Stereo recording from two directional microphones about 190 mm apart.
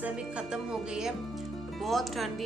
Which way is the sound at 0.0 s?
5° right (ahead or behind).